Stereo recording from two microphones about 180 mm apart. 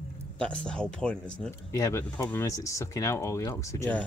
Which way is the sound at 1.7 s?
15° left (ahead or behind).